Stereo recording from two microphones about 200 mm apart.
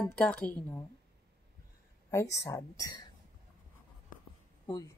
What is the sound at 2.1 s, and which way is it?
A woman's voice, 15° left (ahead or behind).